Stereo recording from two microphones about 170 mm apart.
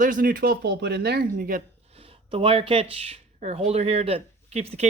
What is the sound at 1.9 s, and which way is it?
Speech, 35° right (ahead or behind).